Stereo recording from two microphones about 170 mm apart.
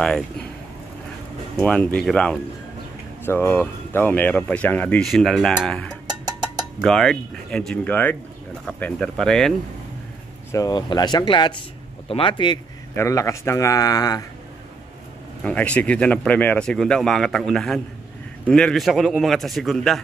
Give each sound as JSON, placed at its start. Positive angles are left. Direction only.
{"t": 0.0, "sound": "speech", "side_deg": 5}
{"t": 1.6, "sound": "speech", "side_deg": 10}
{"t": 10.5, "sound": "a man's voice", "side_deg": 20}
{"t": 12.9, "sound": "a man's voice", "side_deg": 15}
{"t": 15.4, "sound": "speech", "side_deg": 5}